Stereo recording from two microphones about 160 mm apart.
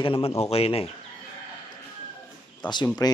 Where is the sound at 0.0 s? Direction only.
35° left (ahead or behind).